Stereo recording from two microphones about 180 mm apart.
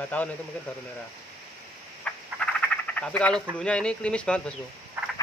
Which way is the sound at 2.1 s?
5° left (ahead or behind).